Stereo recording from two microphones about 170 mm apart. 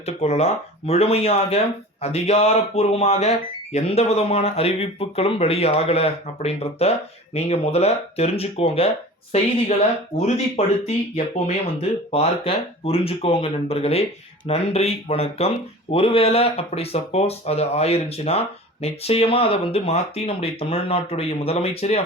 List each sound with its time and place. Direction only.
0.0 s speech: 40° left (ahead or behind)